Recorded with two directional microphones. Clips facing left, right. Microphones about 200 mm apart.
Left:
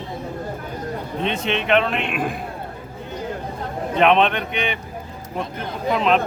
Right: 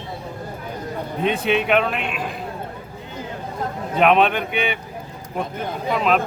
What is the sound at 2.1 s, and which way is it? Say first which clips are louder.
Speech: left 4 dB; 50° left (ahead or behind).